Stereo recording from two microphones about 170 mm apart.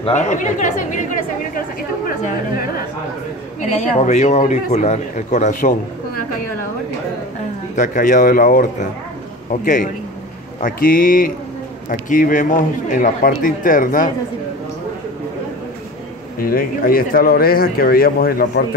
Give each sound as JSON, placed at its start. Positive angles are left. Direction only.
{"t": 0.0, "sound": "speech", "side_deg": 45}
{"t": 3.8, "sound": "speech", "side_deg": 45}
{"t": 7.7, "sound": "speech", "side_deg": 50}
{"t": 16.3, "sound": "speech", "side_deg": 60}